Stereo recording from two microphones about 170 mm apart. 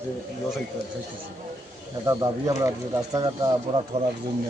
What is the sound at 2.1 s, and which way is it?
Speech, 20° right (ahead or behind).